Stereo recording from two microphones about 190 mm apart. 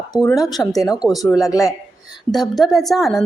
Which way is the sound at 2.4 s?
Centre (ahead or behind).